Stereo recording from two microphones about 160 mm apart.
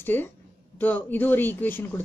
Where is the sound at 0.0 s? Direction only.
15° left (ahead or behind).